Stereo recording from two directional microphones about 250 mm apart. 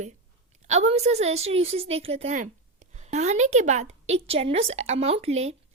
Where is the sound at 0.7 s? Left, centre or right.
Right.